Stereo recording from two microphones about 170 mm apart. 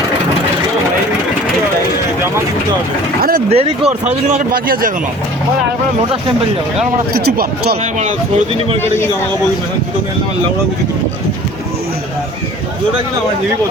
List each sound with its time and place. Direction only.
3.5 s speech: 35° right (ahead or behind); by 4.9 s 55° right (ahead or behind)
7.1 s speech: 65° right (ahead or behind)